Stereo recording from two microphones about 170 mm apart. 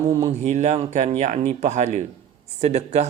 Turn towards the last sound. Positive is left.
turn(degrees=-40)  # may be behind; listen again after turning